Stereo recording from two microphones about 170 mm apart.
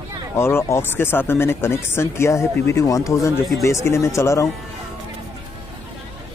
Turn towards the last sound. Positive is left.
turn(degrees=20)  # may be behind; listen again after turning